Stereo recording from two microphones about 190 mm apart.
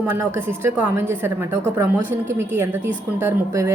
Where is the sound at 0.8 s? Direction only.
10° right (ahead or behind).